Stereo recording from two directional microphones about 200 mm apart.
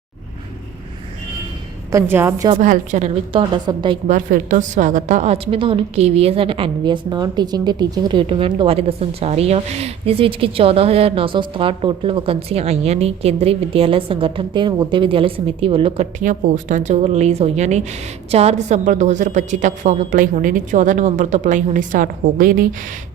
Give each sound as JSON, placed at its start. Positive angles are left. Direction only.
{"t": 1.9, "sound": "a woman's voice", "side_deg": -15}
{"t": 2.6, "sound": "a woman's voice", "side_deg": -35}
{"t": 3.5, "sound": "a woman's voice", "side_deg": -20}
{"t": 4.1, "sound": "a woman's voice", "side_deg": -40}
{"t": 16.2, "sound": "a woman's voice", "side_deg": -40}